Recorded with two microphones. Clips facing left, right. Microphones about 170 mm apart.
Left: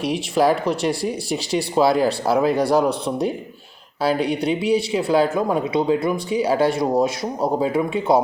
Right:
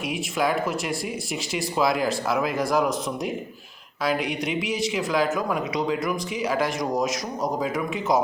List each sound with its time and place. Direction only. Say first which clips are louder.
0.0 s speech: left 7 dB; 35° left (ahead or behind)